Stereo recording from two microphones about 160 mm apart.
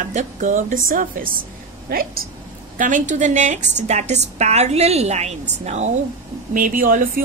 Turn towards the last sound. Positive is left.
turn(degrees=-60)  # may be behind; listen again after turning